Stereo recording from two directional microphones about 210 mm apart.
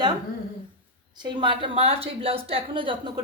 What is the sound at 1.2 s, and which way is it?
A woman's voice, 20° right (ahead or behind).